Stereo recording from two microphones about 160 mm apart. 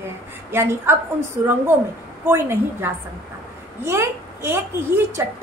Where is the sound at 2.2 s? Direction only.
15° right (ahead or behind).